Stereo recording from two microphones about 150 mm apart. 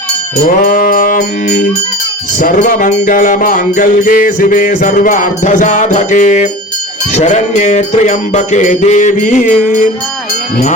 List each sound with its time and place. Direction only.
0.4 s sheep: 70° left (ahead or behind)
2.4 s music: 65° left (ahead or behind)